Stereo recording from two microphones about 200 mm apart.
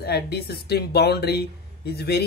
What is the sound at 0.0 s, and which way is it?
Speech, 55° left (ahead or behind).